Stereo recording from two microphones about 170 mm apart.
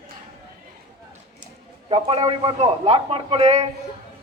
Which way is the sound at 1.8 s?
35° right (ahead or behind).